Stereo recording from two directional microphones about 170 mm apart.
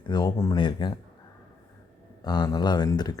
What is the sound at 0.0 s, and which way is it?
Speech, 25° left (ahead or behind).